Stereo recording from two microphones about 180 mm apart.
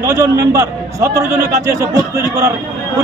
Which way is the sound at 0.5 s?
15° right (ahead or behind).